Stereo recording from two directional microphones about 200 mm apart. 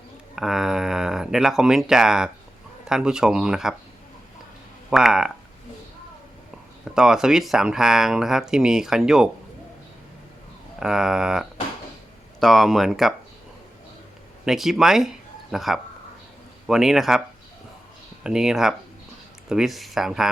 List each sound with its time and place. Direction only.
0.3 s speech: centre (ahead or behind)
4.9 s speech: 5° right (ahead or behind)
6.9 s speech: 5° right (ahead or behind)
10.8 s speech: 5° right (ahead or behind)
14.4 s speech: centre (ahead or behind)